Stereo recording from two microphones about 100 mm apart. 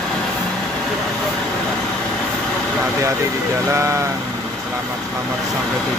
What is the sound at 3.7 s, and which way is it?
Vehicle, 30° right (ahead or behind).